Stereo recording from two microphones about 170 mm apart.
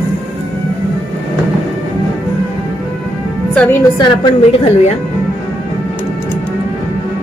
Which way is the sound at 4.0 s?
30° left (ahead or behind).